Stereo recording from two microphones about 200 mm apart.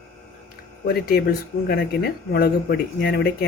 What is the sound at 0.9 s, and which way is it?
Speech, 50° left (ahead or behind).